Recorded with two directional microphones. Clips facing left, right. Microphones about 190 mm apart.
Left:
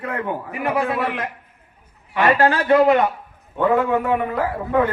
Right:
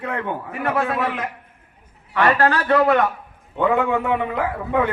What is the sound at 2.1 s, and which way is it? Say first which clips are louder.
A man's voice: left 1 dB; 20° left (ahead or behind).